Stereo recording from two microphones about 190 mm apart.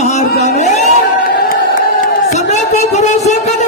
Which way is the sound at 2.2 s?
35° left (ahead or behind).